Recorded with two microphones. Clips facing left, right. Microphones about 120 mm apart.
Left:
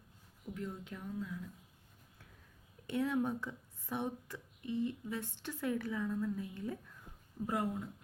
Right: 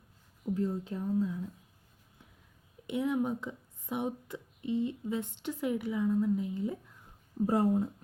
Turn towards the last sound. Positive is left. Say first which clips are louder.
# right 9 dB
turn(degrees=-35)  # may be behind; listen again after turning